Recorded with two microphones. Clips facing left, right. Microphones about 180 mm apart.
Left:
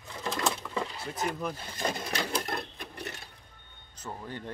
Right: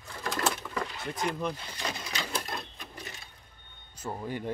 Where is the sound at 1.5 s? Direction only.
45° left (ahead or behind).